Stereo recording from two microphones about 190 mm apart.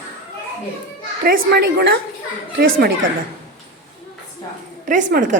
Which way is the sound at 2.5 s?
50° right (ahead or behind).